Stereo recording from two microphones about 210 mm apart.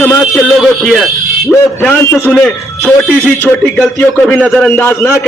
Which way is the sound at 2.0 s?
10° left (ahead or behind).